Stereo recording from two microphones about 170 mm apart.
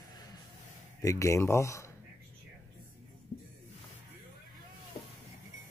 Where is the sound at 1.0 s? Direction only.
20° left (ahead or behind).